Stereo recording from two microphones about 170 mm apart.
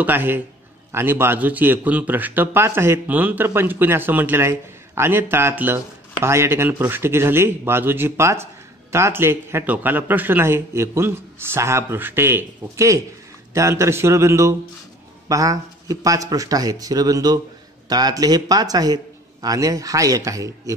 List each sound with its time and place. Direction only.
0.0 s a man's voice: 10° right (ahead or behind)